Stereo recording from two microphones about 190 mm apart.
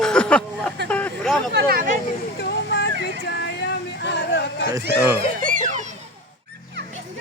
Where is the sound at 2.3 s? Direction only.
60° left (ahead or behind).